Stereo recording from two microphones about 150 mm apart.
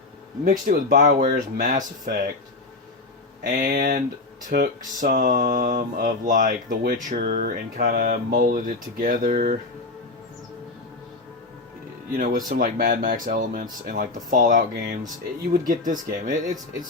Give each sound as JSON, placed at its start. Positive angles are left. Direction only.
{"t": 0.7, "sound": "mantra", "side_deg": -75}
{"t": 3.4, "sound": "mantra", "side_deg": -65}
{"t": 4.4, "sound": "mantra", "side_deg": -70}
{"t": 12.1, "sound": "mantra", "side_deg": -75}